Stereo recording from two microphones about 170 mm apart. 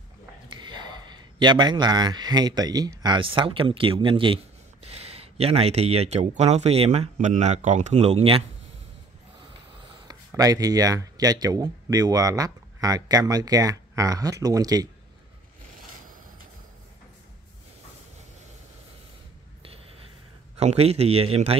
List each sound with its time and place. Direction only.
0.5 s speech: 25° right (ahead or behind)
10.0 s speech: 20° right (ahead or behind)
20.5 s speech: 40° right (ahead or behind)